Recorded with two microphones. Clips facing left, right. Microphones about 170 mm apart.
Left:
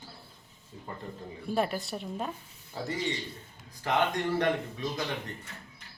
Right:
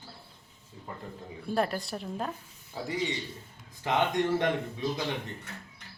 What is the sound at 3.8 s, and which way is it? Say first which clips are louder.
A man's voice: right 1 dB; 20° right (ahead or behind).